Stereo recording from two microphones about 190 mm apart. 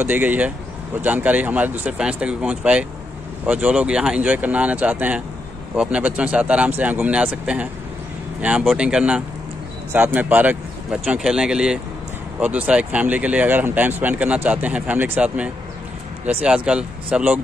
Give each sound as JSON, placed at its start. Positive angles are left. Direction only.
{"t": 0.0, "sound": "speech", "side_deg": -10}